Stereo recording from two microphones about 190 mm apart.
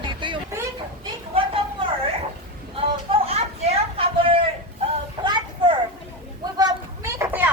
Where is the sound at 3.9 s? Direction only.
30° right (ahead or behind).